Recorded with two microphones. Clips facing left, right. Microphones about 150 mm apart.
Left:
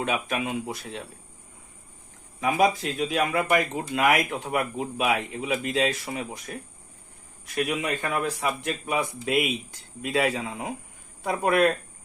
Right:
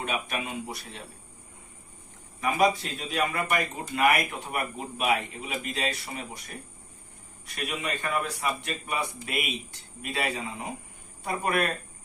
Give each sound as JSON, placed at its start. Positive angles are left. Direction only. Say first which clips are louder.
{"t": 0.0, "sound": "speech", "louder": "left 4 dB", "side_deg": 90}
{"t": 2.4, "sound": "speech", "louder": "left 2 dB", "side_deg": 90}
{"t": 7.5, "sound": "speech", "louder": "left 6 dB", "side_deg": 90}